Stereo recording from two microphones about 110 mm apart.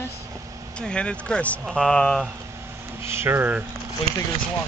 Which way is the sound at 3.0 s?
20° right (ahead or behind).